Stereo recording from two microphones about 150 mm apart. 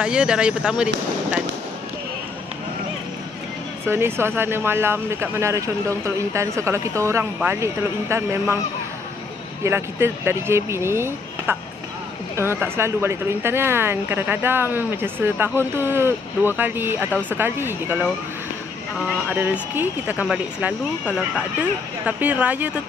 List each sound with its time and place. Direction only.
0.0 s speech: 5° right (ahead or behind)
3.8 s speech: 15° right (ahead or behind)
9.6 s speech: 15° right (ahead or behind)
17.1 s speech: 10° left (ahead or behind)
17.4 s speech: 15° right (ahead or behind)
19.2 s speech: 10° right (ahead or behind)